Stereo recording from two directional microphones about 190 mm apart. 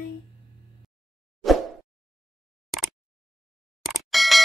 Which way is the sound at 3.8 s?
Centre (ahead or behind).